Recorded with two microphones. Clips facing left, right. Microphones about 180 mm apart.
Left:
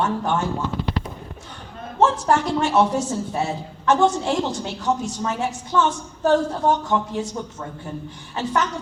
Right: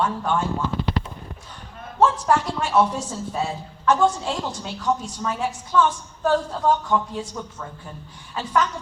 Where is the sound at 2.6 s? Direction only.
25° left (ahead or behind).